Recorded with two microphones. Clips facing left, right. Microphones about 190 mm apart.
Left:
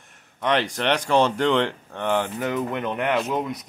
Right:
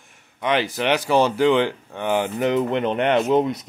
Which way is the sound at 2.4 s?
20° right (ahead or behind).